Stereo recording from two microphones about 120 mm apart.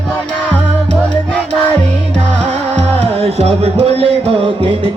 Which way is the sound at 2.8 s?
60° right (ahead or behind).